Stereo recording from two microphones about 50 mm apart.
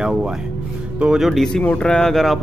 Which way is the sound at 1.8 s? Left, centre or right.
Centre.